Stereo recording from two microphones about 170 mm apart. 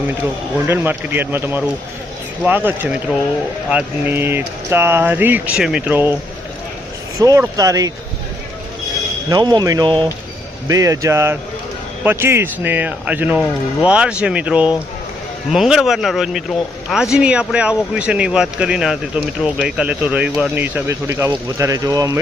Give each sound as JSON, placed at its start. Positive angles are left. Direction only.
{"t": 0.1, "sound": "speech", "side_deg": -10}
{"t": 7.2, "sound": "speech", "side_deg": -20}
{"t": 9.3, "sound": "speech", "side_deg": -25}